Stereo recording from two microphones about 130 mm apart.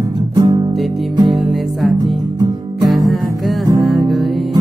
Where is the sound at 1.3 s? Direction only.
Centre (ahead or behind).